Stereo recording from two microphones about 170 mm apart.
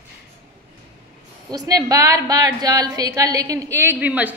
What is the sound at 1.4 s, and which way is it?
A woman's voice, 20° right (ahead or behind).